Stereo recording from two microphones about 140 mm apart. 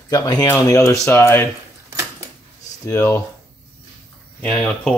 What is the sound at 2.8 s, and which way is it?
Speech, 15° left (ahead or behind).